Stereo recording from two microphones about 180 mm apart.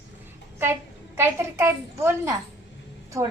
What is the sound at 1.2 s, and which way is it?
A woman's voice, 15° right (ahead or behind).